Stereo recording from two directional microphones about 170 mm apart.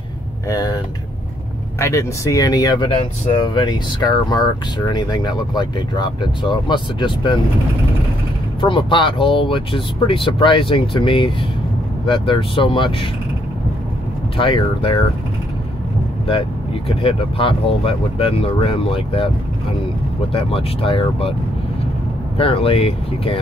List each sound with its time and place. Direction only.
0.5 s speech: 20° left (ahead or behind)
1.8 s speech: 15° left (ahead or behind)
8.5 s speech: 30° left (ahead or behind)
14.3 s speech: 30° left (ahead or behind)
16.3 s speech: 30° left (ahead or behind)
20.3 s speech: 35° left (ahead or behind)
22.4 s speech: 35° left (ahead or behind)